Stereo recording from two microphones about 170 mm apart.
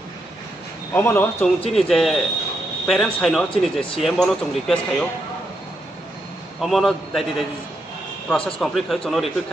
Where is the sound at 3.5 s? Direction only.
30° left (ahead or behind).